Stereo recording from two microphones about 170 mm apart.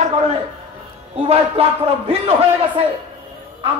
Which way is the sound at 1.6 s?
35° right (ahead or behind).